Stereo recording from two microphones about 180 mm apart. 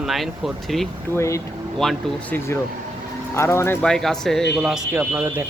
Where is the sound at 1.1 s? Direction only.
15° left (ahead or behind).